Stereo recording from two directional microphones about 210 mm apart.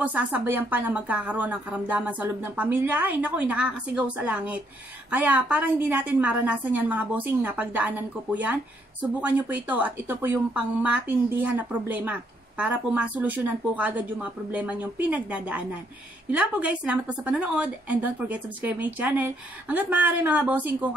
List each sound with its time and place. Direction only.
0.0 s a woman's voice: 10° right (ahead or behind)